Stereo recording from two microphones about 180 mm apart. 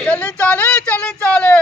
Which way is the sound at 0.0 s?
5° left (ahead or behind).